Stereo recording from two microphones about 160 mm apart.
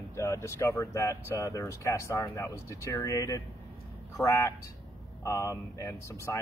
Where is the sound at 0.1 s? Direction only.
20° left (ahead or behind).